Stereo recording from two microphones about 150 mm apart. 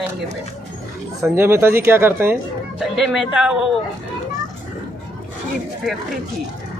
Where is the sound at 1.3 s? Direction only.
15° right (ahead or behind).